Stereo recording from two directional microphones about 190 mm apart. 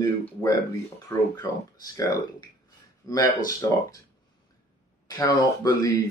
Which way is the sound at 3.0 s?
20° left (ahead or behind).